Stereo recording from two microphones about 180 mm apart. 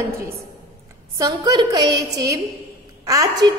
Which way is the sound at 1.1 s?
20° right (ahead or behind).